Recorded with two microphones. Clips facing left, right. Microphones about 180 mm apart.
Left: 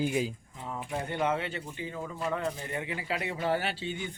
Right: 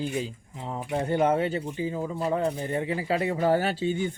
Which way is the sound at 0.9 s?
35° right (ahead or behind).